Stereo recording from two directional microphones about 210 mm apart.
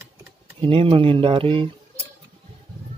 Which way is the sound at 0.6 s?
25° right (ahead or behind).